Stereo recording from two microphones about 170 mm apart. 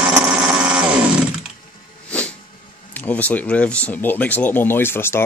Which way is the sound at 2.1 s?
5° left (ahead or behind).